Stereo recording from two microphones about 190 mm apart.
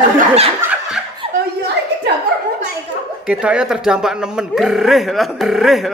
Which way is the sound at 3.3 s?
5° right (ahead or behind).